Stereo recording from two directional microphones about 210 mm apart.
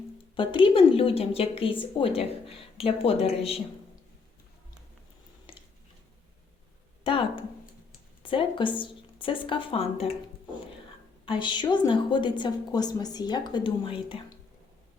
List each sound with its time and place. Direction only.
0.3 s a woman's voice: 25° left (ahead or behind)
5.5 s a sound: 25° left (ahead or behind)
7.0 s a woman's voice: 25° left (ahead or behind)
11.3 s a woman's voice: 20° left (ahead or behind)